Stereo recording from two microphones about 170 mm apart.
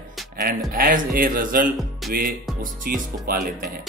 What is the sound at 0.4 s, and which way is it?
Speech, 55° right (ahead or behind).